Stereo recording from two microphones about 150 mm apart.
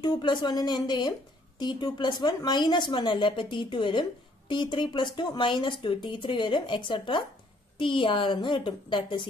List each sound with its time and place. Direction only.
0.0 s a woman's voice: 30° left (ahead or behind)